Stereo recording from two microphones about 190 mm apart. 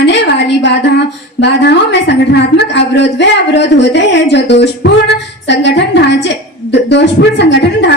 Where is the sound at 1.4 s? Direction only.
65° left (ahead or behind).